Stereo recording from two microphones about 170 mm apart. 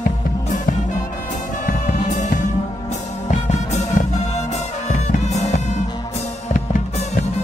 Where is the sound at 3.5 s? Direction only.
40° left (ahead or behind).